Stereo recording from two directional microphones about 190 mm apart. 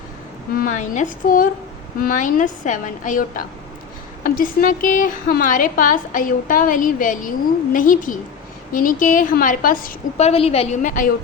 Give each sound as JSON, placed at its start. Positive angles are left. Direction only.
{"t": 0.5, "sound": "a woman's voice", "side_deg": 45}
{"t": 10.2, "sound": "a woman's voice", "side_deg": 35}